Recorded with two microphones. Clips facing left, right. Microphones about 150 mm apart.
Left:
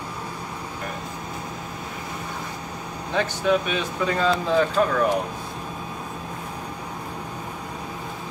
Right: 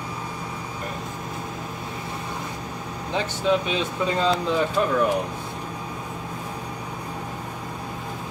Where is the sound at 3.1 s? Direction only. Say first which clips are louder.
Left 1 dB; 25° right (ahead or behind).